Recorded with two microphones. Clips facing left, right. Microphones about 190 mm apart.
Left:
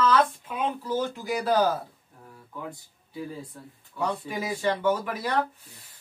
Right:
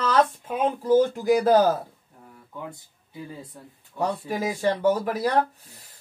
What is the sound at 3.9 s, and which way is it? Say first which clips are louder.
Speech: right 3 dB; 40° right (ahead or behind).